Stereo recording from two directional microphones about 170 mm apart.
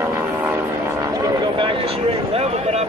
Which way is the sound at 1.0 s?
25° right (ahead or behind).